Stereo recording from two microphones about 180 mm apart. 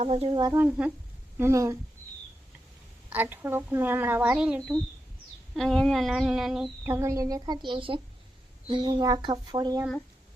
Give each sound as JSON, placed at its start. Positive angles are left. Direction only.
{"t": 0.0, "sound": "speech", "side_deg": -35}
{"t": 0.4, "sound": "speech", "side_deg": -10}
{"t": 3.1, "sound": "speech", "side_deg": -10}
{"t": 5.5, "sound": "a sound", "side_deg": 0}
{"t": 6.8, "sound": "a woman's voice", "side_deg": -15}